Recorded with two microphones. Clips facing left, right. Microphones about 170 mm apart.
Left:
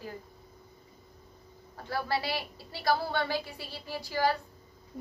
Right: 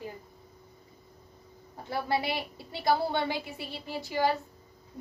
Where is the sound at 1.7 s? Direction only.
20° right (ahead or behind).